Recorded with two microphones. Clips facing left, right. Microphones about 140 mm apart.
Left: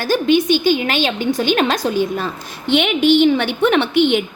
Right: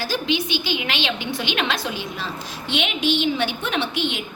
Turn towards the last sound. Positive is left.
turn(degrees=60)  # may be behind; listen again after turning